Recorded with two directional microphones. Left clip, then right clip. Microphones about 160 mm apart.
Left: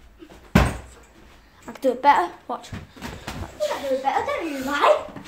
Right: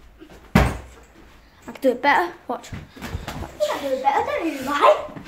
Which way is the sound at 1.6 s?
10° right (ahead or behind).